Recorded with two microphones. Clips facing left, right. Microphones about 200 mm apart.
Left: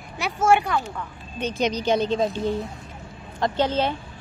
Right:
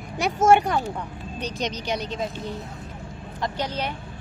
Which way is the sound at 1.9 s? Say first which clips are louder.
Left 8 dB; 30° left (ahead or behind).